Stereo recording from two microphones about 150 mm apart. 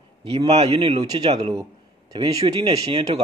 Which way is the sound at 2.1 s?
30° right (ahead or behind).